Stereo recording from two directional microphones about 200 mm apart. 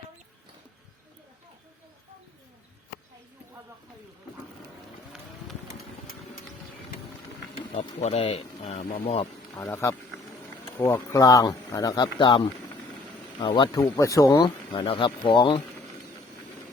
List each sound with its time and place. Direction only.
7.5 s speech: 35° left (ahead or behind)
9.6 s speech: 10° left (ahead or behind)